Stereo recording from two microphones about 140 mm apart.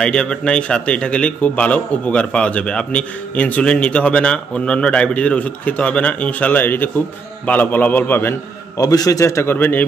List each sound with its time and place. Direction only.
0.0 s a man's voice: 5° left (ahead or behind)